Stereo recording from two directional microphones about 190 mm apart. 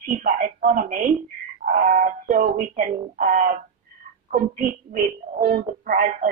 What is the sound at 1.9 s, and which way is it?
Music, 50° right (ahead or behind).